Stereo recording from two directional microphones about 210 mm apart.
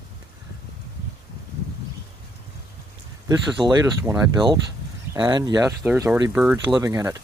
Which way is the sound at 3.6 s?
15° right (ahead or behind).